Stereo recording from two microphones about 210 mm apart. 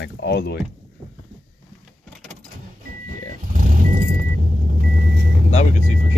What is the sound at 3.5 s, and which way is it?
Vehicle, 40° right (ahead or behind).